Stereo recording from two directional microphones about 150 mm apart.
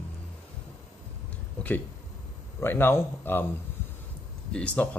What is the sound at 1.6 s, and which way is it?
Speech, 5° left (ahead or behind).